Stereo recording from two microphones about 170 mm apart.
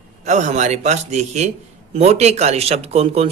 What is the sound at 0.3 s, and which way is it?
A man's voice, 45° right (ahead or behind).